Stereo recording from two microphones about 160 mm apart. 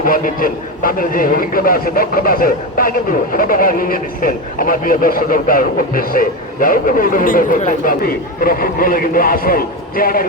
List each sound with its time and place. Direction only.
0.0 s a man's voice: 60° left (ahead or behind)